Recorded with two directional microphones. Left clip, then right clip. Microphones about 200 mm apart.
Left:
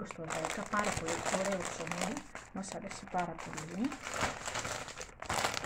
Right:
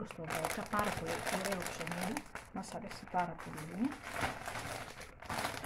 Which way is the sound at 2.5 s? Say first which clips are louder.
Left 2 dB; 5° right (ahead or behind).